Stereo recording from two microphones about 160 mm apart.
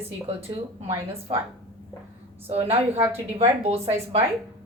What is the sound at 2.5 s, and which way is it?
A woman's voice, 40° right (ahead or behind).